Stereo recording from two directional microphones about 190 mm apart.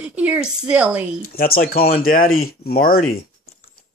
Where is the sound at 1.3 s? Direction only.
50° left (ahead or behind).